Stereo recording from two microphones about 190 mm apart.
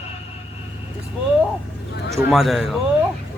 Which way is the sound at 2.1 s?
Centre (ahead or behind).